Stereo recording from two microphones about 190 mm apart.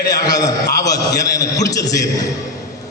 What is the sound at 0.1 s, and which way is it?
A man's voice, 20° left (ahead or behind).